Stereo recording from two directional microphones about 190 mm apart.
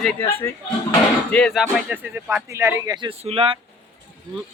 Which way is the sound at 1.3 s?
5° left (ahead or behind).